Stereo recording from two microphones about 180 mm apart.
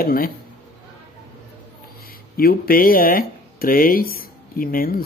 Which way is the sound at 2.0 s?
55° left (ahead or behind).